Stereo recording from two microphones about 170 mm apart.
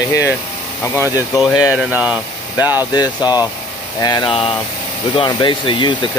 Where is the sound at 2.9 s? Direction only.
25° left (ahead or behind).